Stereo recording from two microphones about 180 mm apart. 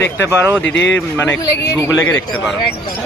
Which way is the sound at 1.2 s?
10° left (ahead or behind).